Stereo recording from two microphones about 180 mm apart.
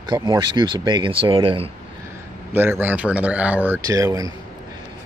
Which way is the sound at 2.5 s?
10° right (ahead or behind).